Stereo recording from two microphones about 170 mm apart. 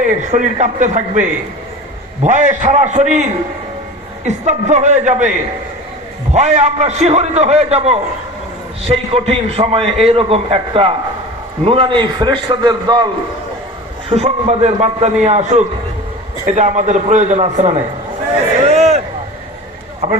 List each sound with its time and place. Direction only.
0.0 s a man's voice: 45° right (ahead or behind)
4.3 s a man's voice: 45° right (ahead or behind)
6.3 s a man's voice: 45° right (ahead or behind)
9.1 s a man's voice: 35° right (ahead or behind)
14.1 s a man's voice: 40° right (ahead or behind)
18.6 s a sound: 40° right (ahead or behind)